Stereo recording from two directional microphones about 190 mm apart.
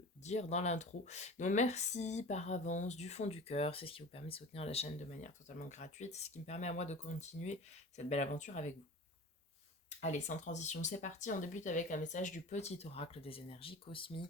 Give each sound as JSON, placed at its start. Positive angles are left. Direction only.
{"t": 0.2, "sound": "speech", "side_deg": 35}
{"t": 10.0, "sound": "speech", "side_deg": 40}